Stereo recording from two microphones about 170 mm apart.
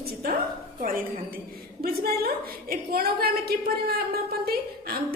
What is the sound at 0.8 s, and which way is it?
A woman's voice, 55° right (ahead or behind).